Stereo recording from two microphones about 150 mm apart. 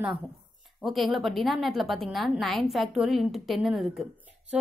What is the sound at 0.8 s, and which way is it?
A woman's voice, centre (ahead or behind).